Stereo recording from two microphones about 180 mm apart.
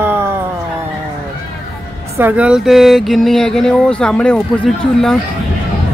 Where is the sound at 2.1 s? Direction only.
10° right (ahead or behind).